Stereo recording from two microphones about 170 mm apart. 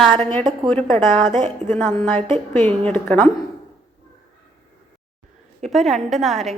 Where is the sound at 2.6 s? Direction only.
10° left (ahead or behind).